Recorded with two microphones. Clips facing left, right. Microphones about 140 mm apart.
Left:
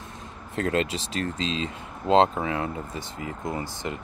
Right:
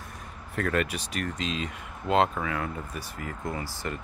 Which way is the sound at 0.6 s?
25° left (ahead or behind).